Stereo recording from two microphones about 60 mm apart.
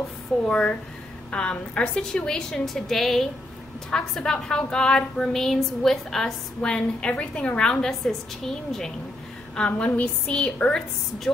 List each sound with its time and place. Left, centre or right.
0.5 s a woman's voice: centre
9.6 s a woman's voice: left